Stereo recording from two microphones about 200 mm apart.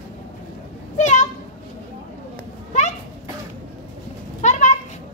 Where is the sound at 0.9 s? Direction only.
35° left (ahead or behind).